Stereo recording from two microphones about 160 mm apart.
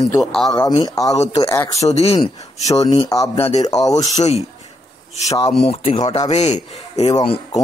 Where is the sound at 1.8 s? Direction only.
40° left (ahead or behind).